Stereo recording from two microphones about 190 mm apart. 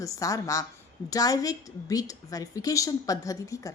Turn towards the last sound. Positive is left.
turn(degrees=15)  # may be behind; listen again after turning